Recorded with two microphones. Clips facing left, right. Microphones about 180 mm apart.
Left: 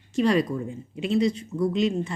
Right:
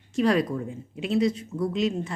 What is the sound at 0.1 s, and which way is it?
Speech, centre (ahead or behind).